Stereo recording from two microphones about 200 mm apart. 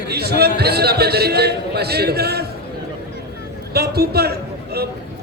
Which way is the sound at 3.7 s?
50° right (ahead or behind).